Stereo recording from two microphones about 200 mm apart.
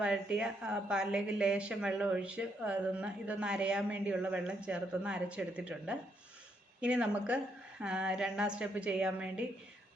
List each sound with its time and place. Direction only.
0.0 s a woman's voice: 5° right (ahead or behind)